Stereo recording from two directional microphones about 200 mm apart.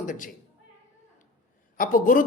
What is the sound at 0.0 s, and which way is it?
Speech, 40° left (ahead or behind).